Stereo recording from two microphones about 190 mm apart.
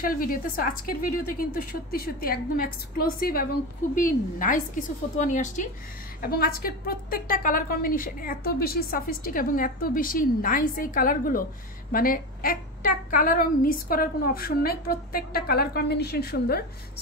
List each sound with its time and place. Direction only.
0.0 s a woman's voice: 50° left (ahead or behind)
6.2 s a woman's voice: 50° left (ahead or behind)